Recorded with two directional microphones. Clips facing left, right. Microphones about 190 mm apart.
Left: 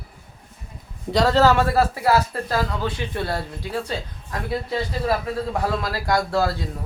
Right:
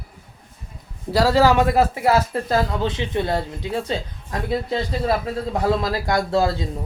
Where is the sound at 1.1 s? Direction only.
5° right (ahead or behind).